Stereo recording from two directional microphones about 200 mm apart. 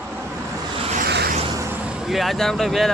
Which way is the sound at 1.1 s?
55° right (ahead or behind).